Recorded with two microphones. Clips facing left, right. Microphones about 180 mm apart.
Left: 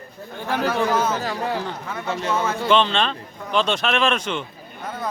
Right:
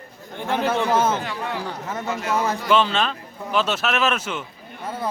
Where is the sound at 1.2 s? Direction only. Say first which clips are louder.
Left 3 dB; 35° left (ahead or behind).